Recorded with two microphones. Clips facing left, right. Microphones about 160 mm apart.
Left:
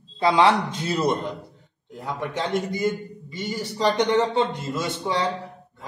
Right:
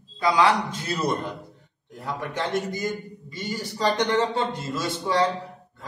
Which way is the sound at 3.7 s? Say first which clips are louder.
Left 2 dB; 20° left (ahead or behind).